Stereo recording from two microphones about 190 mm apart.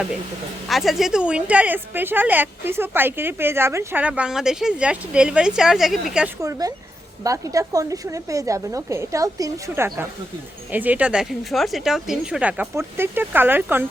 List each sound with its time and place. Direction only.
0.7 s a woman's voice: centre (ahead or behind)
6.4 s a woman's voice: 20° right (ahead or behind)